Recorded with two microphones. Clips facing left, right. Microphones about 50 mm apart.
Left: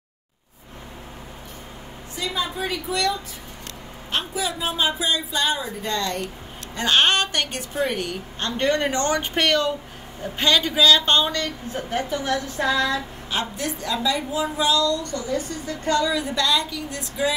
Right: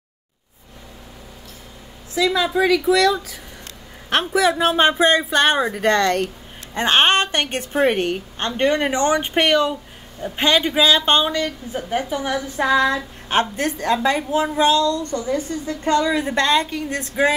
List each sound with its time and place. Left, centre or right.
4.1 s a woman's voice: right
4.5 s speech: right
6.7 s a woman's voice: right
13.3 s a woman's voice: right